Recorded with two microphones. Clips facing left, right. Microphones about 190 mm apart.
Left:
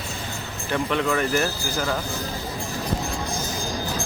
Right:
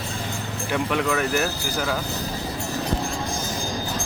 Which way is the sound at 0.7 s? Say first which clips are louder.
Even; 5° right (ahead or behind).